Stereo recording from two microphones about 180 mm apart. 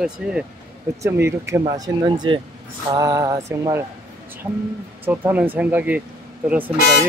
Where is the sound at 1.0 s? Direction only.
15° right (ahead or behind).